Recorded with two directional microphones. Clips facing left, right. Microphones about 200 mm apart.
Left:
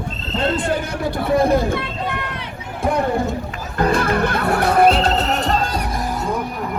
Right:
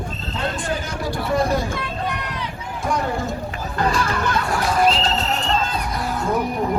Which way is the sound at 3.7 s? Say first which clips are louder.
Left 5 dB; 55° left (ahead or behind).